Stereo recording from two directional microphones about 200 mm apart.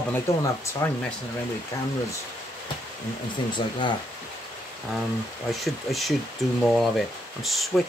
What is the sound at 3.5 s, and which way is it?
Speech, 25° left (ahead or behind).